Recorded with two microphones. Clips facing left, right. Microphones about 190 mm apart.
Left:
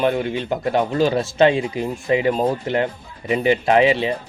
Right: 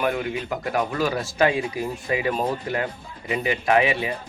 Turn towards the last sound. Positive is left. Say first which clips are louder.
# left 5 dB
turn(degrees=25)  # may be behind; listen again after turning